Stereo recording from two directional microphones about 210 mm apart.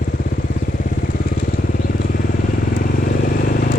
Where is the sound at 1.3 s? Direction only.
45° left (ahead or behind).